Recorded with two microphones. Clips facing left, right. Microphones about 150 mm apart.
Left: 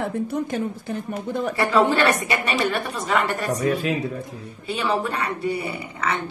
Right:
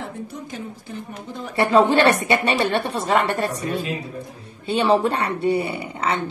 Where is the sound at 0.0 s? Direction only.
60° left (ahead or behind).